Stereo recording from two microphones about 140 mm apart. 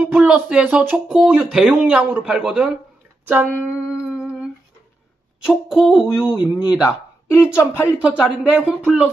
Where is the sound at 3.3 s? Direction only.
10° right (ahead or behind).